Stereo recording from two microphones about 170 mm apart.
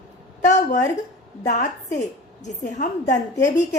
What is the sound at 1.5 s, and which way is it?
A woman's voice, 45° left (ahead or behind).